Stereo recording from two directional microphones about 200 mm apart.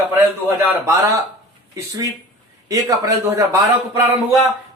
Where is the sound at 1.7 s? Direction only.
15° right (ahead or behind).